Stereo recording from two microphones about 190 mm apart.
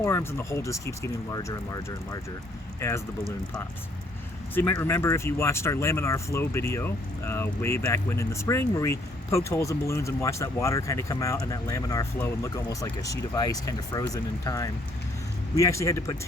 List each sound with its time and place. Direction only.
0.0 s speech: 15° left (ahead or behind)
4.5 s speech: 10° left (ahead or behind)